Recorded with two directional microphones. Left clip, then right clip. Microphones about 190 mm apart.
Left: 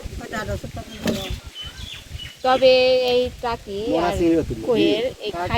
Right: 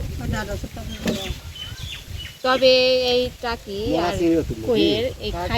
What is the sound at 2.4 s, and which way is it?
Speech, 50° right (ahead or behind).